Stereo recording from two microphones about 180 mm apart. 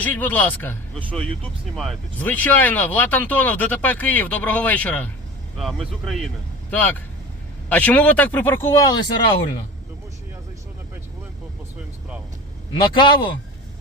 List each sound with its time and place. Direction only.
0.0 s speech: 10° left (ahead or behind)
12.7 s a man's voice: 25° left (ahead or behind)